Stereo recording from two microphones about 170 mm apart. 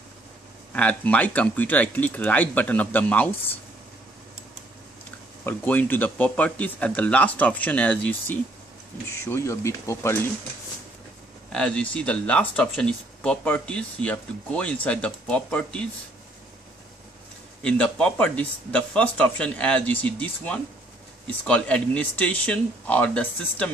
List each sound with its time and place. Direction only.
0.7 s speech: 10° left (ahead or behind)
5.4 s speech: 10° left (ahead or behind)
11.5 s speech: 5° left (ahead or behind)
17.6 s speech: 5° left (ahead or behind)